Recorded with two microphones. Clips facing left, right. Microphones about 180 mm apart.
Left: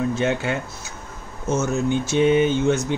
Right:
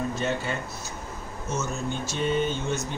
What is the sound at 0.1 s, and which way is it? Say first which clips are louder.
Speech: left 6 dB; 80° left.